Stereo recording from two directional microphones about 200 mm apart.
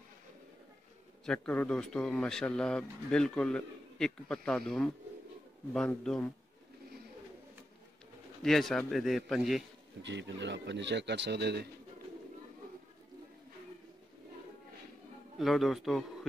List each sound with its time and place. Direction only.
1.2 s a man's voice: 5° left (ahead or behind)
8.4 s a man's voice: centre (ahead or behind)
10.0 s speech: 60° right (ahead or behind)
15.3 s a man's voice: centre (ahead or behind)